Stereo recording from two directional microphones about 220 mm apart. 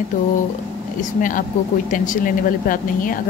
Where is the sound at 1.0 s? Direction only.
35° left (ahead or behind).